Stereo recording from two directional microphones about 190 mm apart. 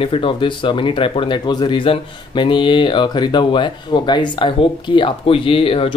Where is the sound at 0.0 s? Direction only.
30° left (ahead or behind).